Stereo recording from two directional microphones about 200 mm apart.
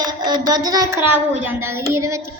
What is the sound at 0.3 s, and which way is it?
A woman's voice, 20° right (ahead or behind).